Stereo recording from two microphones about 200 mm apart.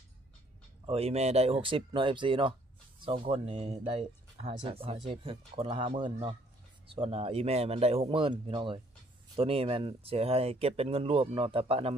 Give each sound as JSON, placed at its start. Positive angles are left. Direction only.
{"t": 0.8, "sound": "speech", "side_deg": -30}